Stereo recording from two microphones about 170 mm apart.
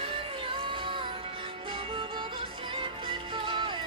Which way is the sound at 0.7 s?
30° right (ahead or behind).